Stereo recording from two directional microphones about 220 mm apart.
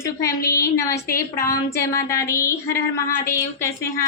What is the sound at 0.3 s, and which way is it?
Speech, 15° left (ahead or behind).